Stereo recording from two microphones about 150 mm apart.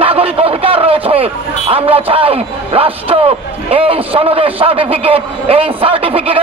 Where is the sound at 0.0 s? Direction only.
40° right (ahead or behind).